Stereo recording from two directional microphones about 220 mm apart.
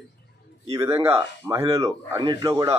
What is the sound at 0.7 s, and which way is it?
Speech, 10° right (ahead or behind).